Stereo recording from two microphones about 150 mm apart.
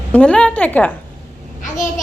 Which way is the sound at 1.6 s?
55° left (ahead or behind).